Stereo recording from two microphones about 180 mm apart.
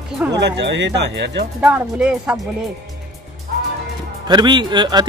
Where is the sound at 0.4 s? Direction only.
75° right (ahead or behind).